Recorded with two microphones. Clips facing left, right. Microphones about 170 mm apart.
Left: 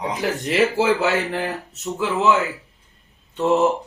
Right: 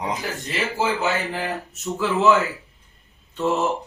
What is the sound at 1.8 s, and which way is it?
Speech, 15° left (ahead or behind).